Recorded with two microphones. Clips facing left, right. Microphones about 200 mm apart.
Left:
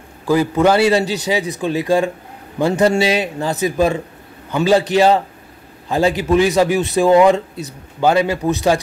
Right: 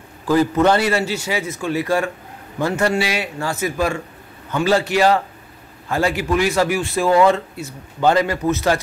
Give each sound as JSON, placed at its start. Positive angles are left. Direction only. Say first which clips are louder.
{"t": 0.3, "sound": "a man's voice", "louder": "left 1 dB", "side_deg": 10}